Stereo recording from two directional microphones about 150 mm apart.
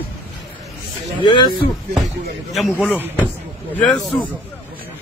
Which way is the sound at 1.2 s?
30° left (ahead or behind).